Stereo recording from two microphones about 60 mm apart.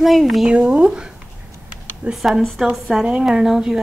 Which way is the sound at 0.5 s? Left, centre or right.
Centre.